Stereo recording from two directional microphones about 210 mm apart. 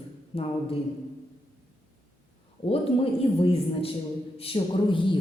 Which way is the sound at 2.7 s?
25° left (ahead or behind).